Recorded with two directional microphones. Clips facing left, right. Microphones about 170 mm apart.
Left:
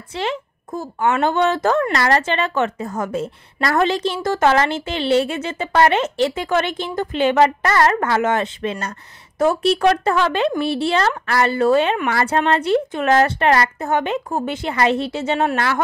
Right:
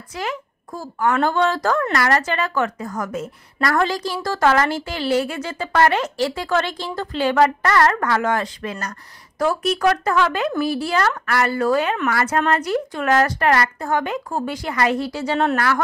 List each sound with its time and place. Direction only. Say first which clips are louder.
0.1 s a woman's voice: left 3 dB; 25° left (ahead or behind)